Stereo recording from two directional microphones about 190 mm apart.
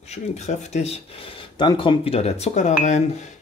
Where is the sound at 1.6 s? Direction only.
25° left (ahead or behind).